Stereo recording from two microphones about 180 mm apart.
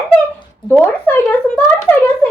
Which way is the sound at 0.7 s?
10° left (ahead or behind).